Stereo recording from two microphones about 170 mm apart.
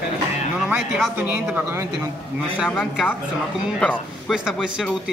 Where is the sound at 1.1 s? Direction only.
10° right (ahead or behind).